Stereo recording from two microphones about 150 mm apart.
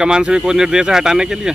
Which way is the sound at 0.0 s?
5° right (ahead or behind).